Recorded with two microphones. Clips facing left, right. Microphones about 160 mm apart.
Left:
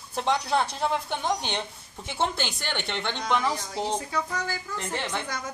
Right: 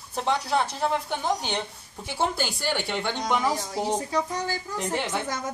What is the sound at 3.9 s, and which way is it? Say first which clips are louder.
Speech: right 3 dB; 35° right (ahead or behind).